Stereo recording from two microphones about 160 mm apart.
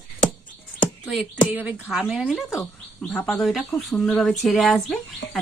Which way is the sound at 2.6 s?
10° left (ahead or behind).